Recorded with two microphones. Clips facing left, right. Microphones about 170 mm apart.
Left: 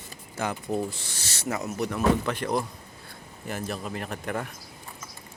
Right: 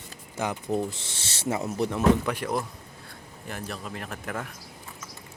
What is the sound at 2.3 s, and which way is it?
Speech, 5° right (ahead or behind).